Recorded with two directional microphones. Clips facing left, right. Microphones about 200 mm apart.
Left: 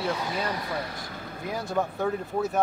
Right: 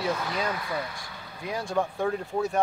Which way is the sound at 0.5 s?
40° left (ahead or behind).